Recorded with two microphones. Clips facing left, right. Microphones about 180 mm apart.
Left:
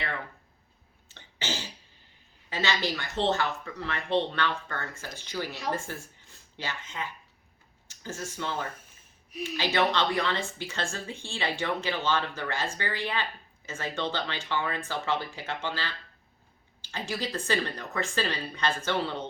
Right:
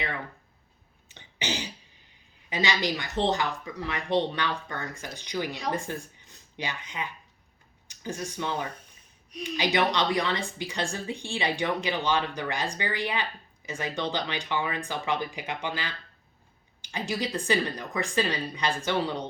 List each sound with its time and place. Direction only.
1.0 s cough: 15° right (ahead or behind)
2.5 s a woman's voice: 15° right (ahead or behind)